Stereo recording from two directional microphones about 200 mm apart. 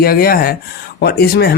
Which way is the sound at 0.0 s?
50° left (ahead or behind).